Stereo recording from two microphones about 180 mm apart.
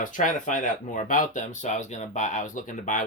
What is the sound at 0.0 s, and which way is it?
Speech, 45° left (ahead or behind).